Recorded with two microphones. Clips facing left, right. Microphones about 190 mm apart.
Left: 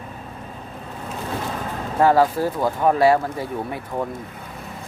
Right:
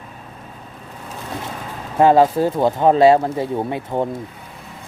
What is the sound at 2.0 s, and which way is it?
Speech, 20° right (ahead or behind).